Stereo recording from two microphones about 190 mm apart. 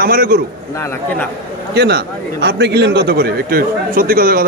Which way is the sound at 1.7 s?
60° right (ahead or behind).